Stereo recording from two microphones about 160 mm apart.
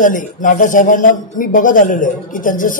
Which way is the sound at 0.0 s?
55° left (ahead or behind).